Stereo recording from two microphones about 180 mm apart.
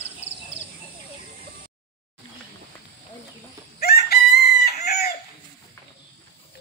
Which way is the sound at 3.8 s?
60° left (ahead or behind).